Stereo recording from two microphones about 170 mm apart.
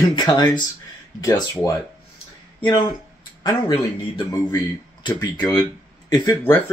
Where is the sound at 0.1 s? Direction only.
25° left (ahead or behind).